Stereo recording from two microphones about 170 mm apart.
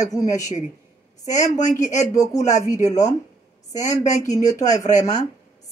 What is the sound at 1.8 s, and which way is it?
Speech, 45° left (ahead or behind).